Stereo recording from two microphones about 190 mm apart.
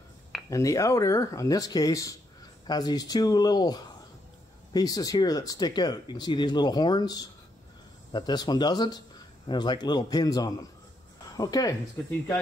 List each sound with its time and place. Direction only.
0.5 s speech: 15° left (ahead or behind)